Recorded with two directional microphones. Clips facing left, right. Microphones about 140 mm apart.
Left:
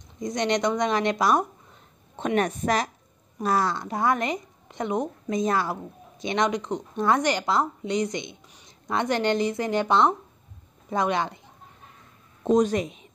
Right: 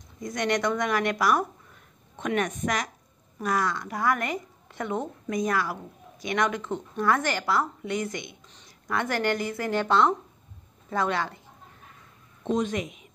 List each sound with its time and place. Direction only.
0.2 s a woman's voice: 20° left (ahead or behind)
12.4 s a woman's voice: 40° left (ahead or behind)